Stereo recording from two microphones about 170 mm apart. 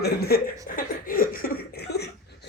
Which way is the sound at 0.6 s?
55° left (ahead or behind).